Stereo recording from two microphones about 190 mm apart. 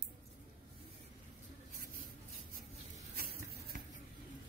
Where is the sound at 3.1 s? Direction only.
50° right (ahead or behind).